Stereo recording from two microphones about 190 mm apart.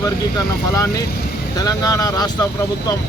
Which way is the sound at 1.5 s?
20° left (ahead or behind).